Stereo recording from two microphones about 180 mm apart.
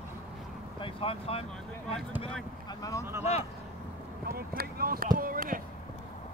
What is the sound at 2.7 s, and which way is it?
Speech, 20° left (ahead or behind).